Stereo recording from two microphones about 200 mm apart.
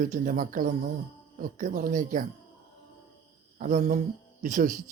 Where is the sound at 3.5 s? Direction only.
40° right (ahead or behind).